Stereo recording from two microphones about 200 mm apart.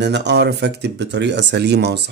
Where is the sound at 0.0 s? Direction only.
60° right (ahead or behind).